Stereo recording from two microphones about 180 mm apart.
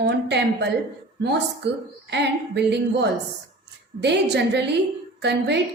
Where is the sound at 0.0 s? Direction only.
70° right (ahead or behind).